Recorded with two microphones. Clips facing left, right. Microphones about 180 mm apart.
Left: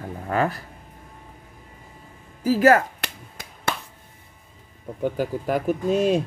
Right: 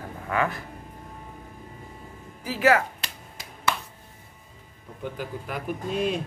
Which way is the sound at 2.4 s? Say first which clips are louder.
Left 5 dB; 40° left (ahead or behind).